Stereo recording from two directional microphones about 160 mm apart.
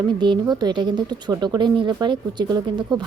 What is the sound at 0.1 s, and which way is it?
Speech, 30° right (ahead or behind).